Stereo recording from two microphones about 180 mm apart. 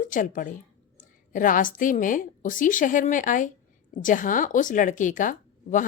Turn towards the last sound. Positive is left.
turn(degrees=45)  # may be behind; listen again after turning